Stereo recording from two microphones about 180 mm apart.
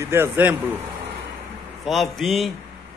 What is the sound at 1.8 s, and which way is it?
Speech, centre (ahead or behind).